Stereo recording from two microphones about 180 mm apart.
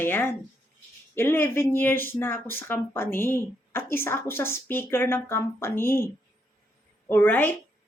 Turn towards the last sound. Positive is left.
turn(degrees=10)  # may be behind; listen again after turning